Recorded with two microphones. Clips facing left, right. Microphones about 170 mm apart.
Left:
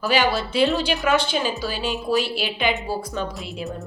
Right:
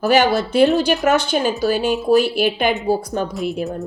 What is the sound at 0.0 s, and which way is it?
A woman's voice, 45° right (ahead or behind).